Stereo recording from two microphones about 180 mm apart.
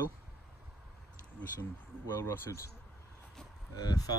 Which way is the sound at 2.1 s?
15° left (ahead or behind).